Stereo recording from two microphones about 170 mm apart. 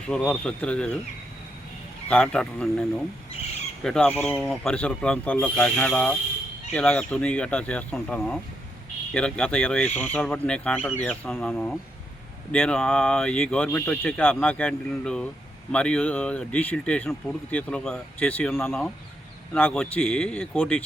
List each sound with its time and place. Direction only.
0.1 s speech: 5° left (ahead or behind)
2.0 s speech: 5° left (ahead or behind)